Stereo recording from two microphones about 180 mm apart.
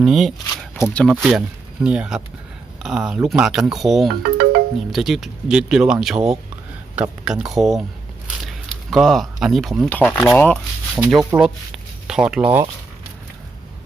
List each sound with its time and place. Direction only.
0.0 s speech: centre (ahead or behind)
0.8 s speech: 15° left (ahead or behind)
1.0 s speech: centre (ahead or behind)
4.1 s music: 60° right (ahead or behind)
4.9 s speech: centre (ahead or behind)
10.9 s speech: 5° right (ahead or behind)